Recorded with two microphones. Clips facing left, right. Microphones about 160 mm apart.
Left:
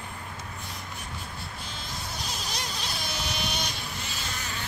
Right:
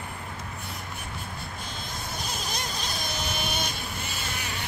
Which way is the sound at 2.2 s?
50° right (ahead or behind).